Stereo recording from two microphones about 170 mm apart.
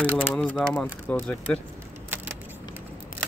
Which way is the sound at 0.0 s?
10° left (ahead or behind).